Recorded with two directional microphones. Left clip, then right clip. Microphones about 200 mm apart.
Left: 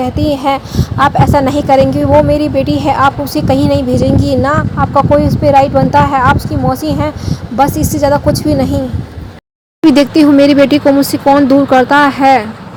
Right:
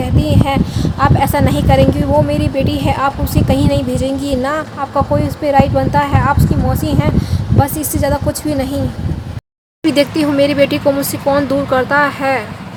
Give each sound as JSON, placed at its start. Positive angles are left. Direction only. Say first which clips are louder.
{"t": 0.0, "sound": "speech", "louder": "left 4 dB", "side_deg": 25}
{"t": 9.8, "sound": "speech", "louder": "left 6 dB", "side_deg": 25}